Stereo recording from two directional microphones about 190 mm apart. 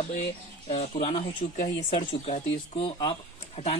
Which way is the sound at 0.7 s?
30° left (ahead or behind).